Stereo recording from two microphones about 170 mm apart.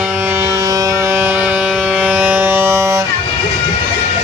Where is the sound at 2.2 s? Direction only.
10° right (ahead or behind).